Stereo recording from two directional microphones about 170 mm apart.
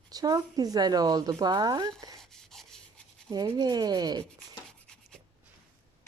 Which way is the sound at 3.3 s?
25° right (ahead or behind).